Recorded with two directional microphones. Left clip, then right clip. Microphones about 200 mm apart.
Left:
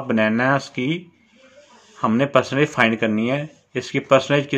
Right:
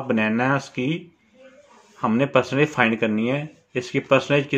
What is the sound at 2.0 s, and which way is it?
A man's voice, 15° left (ahead or behind).